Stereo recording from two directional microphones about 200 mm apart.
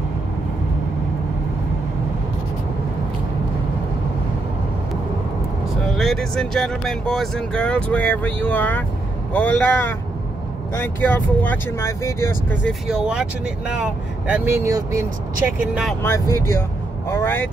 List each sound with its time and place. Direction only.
5.9 s speech: centre (ahead or behind)
12.8 s speech: 5° right (ahead or behind)
16.0 s speech: 15° left (ahead or behind)